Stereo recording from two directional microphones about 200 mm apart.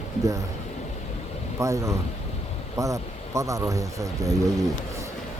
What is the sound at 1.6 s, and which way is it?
Speech, 15° right (ahead or behind).